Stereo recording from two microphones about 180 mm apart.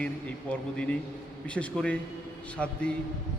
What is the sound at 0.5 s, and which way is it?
A man's voice, 5° left (ahead or behind).